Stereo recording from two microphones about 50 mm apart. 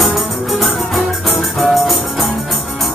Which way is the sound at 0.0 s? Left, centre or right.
Centre.